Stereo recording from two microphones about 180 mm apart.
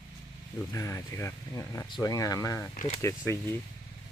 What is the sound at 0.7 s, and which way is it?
Speech, 15° left (ahead or behind).